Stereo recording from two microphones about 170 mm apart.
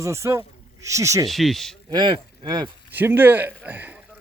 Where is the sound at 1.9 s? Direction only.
25° right (ahead or behind).